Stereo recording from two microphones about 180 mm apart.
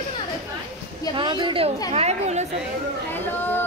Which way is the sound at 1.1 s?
25° right (ahead or behind).